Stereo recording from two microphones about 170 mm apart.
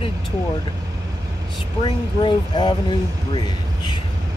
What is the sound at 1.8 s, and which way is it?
Speech, 25° left (ahead or behind).